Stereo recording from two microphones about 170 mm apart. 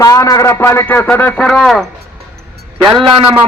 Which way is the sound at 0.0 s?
20° left (ahead or behind).